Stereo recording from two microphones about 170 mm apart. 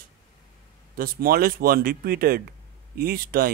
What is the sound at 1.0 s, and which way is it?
Speech, 60° right (ahead or behind).